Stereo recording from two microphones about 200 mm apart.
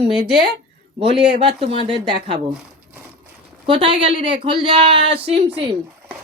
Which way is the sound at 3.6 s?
25° right (ahead or behind).